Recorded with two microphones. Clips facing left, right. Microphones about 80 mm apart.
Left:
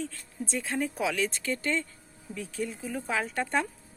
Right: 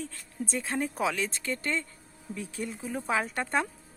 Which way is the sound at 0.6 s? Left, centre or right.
Right.